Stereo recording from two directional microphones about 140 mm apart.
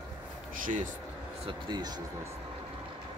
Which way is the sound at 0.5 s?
75° right (ahead or behind).